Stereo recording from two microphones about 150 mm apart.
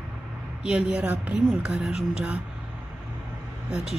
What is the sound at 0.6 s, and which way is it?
Speech, 5° right (ahead or behind).